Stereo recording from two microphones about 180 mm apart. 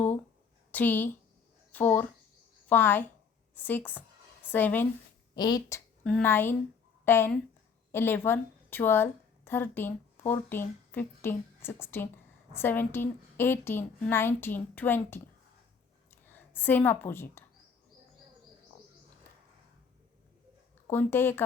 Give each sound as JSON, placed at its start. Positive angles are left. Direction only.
{"t": 0.7, "sound": "a woman's voice", "side_deg": 10}
{"t": 5.3, "sound": "a woman's voice", "side_deg": 25}
{"t": 6.0, "sound": "a woman's voice", "side_deg": 5}
{"t": 20.8, "sound": "a woman's voice", "side_deg": 10}